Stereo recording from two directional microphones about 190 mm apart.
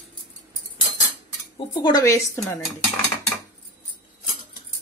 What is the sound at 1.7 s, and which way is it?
Speech, 20° left (ahead or behind).